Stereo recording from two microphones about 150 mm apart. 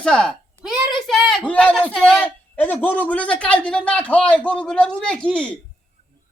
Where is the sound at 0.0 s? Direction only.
5° left (ahead or behind).